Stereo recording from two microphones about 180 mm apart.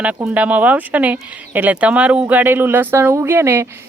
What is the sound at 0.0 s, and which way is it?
Speech, 10° right (ahead or behind).